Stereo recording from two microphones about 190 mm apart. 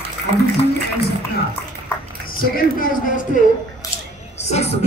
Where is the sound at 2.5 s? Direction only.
45° left (ahead or behind).